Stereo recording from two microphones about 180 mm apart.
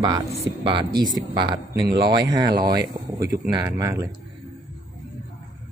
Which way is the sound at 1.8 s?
65° right (ahead or behind).